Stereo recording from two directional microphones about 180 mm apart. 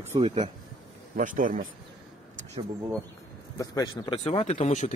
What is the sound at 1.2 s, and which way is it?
Speech, 45° right (ahead or behind).